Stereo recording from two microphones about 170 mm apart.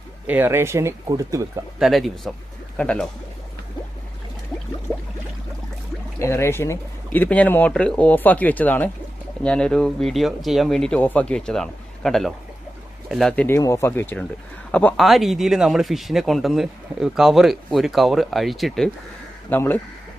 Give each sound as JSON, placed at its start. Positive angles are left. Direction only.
{"t": 0.3, "sound": "speech", "side_deg": -10}
{"t": 1.8, "sound": "speech", "side_deg": 0}
{"t": 6.1, "sound": "speech", "side_deg": 15}
{"t": 19.5, "sound": "speech", "side_deg": 10}